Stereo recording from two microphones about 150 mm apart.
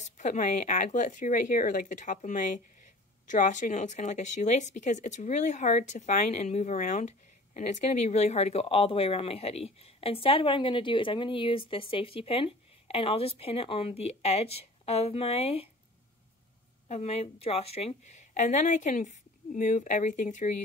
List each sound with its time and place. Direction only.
0.2 s speech: 55° left (ahead or behind)
16.8 s speech: 45° left (ahead or behind)